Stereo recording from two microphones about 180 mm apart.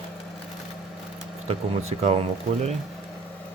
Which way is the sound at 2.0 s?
35° right (ahead or behind).